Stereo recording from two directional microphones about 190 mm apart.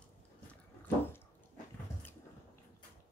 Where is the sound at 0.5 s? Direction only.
10° left (ahead or behind).